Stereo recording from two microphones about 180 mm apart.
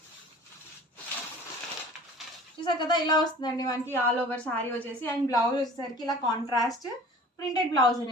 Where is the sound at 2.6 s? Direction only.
25° left (ahead or behind).